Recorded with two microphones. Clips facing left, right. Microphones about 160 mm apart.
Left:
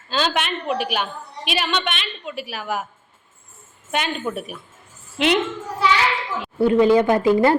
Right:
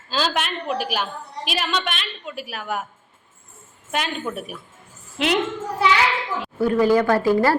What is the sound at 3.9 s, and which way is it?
A woman's voice, centre (ahead or behind).